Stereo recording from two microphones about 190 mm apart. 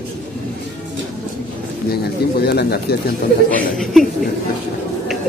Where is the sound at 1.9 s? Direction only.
55° left (ahead or behind).